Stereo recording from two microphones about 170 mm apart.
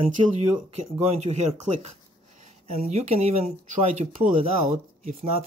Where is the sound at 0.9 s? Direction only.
40° right (ahead or behind).